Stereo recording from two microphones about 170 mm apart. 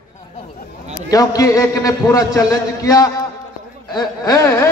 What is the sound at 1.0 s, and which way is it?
A man's voice, 20° left (ahead or behind).